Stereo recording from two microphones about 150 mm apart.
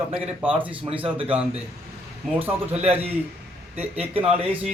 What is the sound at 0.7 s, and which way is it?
Speech, 35° right (ahead or behind).